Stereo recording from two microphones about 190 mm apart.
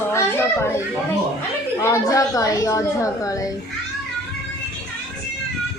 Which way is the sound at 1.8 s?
15° left (ahead or behind).